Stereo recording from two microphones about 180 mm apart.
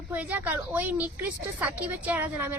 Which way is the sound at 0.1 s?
10° right (ahead or behind).